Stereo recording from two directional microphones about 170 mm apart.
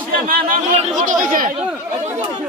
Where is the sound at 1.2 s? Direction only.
55° right (ahead or behind).